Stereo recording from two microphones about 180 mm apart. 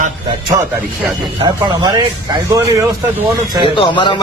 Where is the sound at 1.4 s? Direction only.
20° right (ahead or behind).